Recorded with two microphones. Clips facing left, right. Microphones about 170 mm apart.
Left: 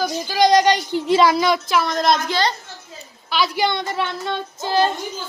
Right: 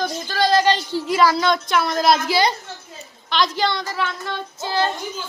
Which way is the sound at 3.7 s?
25° left (ahead or behind).